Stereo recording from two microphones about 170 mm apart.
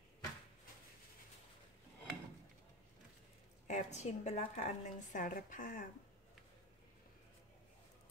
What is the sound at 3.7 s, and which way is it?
A woman's voice, 45° left (ahead or behind).